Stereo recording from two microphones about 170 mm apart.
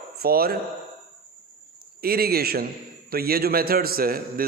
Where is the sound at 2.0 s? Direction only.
65° right (ahead or behind).